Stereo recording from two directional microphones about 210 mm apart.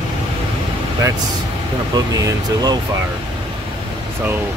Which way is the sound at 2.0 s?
20° right (ahead or behind).